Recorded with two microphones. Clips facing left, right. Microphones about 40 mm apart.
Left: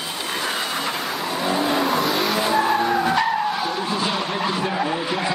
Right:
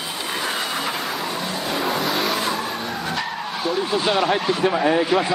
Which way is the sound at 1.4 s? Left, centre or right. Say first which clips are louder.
Left 5 dB; centre.